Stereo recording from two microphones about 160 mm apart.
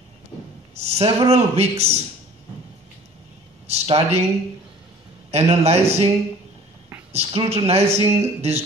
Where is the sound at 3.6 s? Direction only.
40° right (ahead or behind).